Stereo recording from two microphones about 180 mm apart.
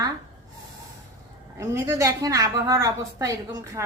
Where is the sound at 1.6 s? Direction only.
15° right (ahead or behind).